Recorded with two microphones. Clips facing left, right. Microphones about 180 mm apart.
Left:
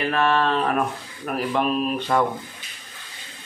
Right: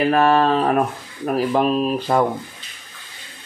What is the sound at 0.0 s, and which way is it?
Speech, 40° right (ahead or behind).